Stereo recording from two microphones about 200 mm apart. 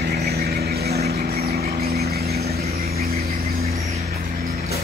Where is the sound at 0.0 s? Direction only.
50° right (ahead or behind).